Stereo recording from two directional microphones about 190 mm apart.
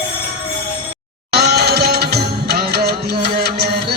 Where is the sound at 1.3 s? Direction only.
55° right (ahead or behind).